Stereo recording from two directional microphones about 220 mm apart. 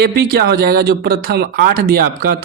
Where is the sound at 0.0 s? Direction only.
45° right (ahead or behind).